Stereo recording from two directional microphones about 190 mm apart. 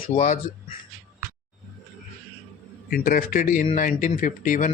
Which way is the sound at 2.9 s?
45° left (ahead or behind).